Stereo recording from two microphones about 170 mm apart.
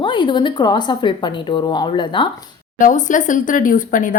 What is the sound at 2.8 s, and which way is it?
Speech, 50° left (ahead or behind).